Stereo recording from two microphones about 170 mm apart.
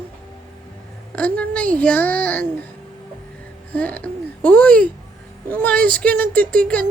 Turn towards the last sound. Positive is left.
turn(degrees=5)  # may be behind; listen again after turning